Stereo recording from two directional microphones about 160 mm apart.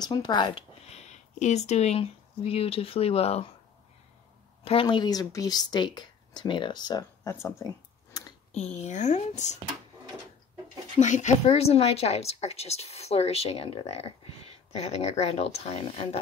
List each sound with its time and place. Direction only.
0.0 s speech: 25° left (ahead or behind)
4.6 s a woman's voice: 30° left (ahead or behind)
8.5 s speech: 45° left (ahead or behind)
11.0 s a woman's voice: 50° left (ahead or behind)